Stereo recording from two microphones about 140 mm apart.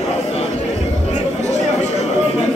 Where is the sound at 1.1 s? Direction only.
55° left (ahead or behind).